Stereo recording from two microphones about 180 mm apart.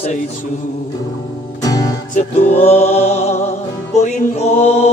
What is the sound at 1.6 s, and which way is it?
Music, 20° left (ahead or behind).